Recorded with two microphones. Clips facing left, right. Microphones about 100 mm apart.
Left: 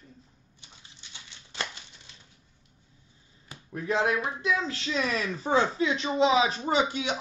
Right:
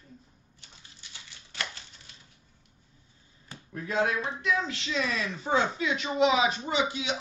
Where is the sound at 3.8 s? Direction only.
25° left (ahead or behind).